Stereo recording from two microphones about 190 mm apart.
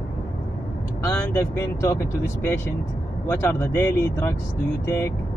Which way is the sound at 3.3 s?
15° left (ahead or behind).